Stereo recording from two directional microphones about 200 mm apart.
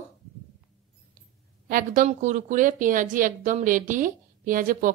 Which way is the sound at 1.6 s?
45° right (ahead or behind).